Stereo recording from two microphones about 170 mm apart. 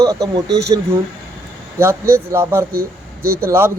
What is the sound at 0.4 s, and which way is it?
Speech, 80° right.